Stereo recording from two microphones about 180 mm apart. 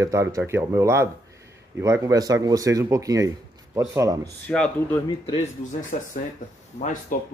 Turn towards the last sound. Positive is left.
turn(degrees=45)  # may be behind; listen again after turning